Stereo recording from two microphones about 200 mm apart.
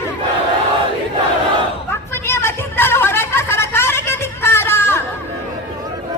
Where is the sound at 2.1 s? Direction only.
10° left (ahead or behind).